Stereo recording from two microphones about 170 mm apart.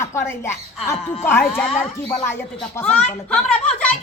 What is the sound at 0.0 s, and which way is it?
A woman's voice, 15° left (ahead or behind).